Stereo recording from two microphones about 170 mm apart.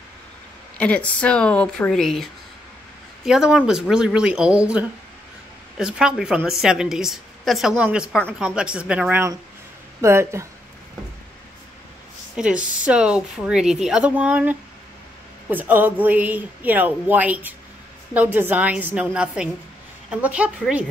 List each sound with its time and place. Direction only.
0.7 s a woman's voice: 5° left (ahead or behind)
3.3 s a woman's voice: 5° right (ahead or behind)
12.4 s a woman's voice: 5° right (ahead or behind)